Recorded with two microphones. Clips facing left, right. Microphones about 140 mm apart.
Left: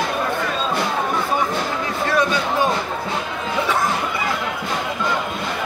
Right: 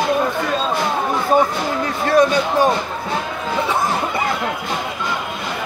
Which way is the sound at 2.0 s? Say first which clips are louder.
Right 6 dB; 40° right (ahead or behind).